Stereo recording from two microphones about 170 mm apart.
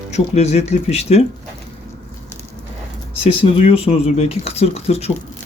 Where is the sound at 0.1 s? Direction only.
40° left (ahead or behind).